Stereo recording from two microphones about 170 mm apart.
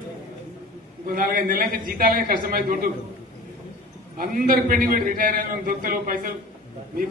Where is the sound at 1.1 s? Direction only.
55° right (ahead or behind).